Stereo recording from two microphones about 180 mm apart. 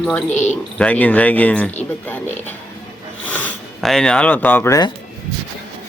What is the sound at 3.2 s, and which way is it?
Speech, 10° left (ahead or behind).